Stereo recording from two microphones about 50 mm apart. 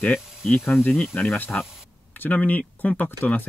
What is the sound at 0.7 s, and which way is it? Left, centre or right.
Speech, left.